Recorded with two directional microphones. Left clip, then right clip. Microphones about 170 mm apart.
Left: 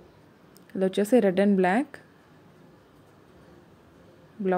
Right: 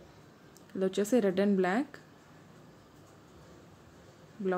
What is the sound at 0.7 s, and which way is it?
Speech, 20° left (ahead or behind).